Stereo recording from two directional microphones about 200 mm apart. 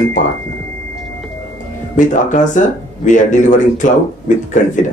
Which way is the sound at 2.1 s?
40° left (ahead or behind).